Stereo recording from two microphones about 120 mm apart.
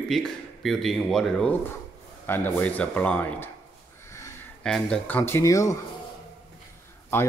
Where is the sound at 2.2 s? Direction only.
15° left (ahead or behind).